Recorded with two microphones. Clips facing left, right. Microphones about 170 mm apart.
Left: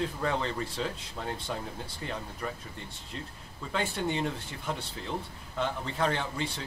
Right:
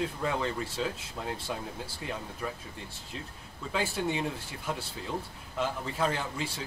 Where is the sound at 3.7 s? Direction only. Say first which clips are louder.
Even; 5° right (ahead or behind).